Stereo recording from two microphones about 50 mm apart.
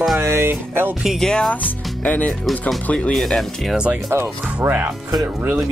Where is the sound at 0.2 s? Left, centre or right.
Right.